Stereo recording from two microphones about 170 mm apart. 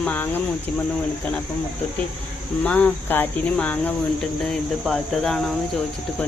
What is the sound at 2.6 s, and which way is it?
Cricket, 10° left (ahead or behind).